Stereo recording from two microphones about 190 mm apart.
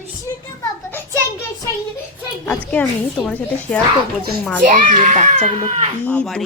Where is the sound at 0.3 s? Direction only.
20° left (ahead or behind).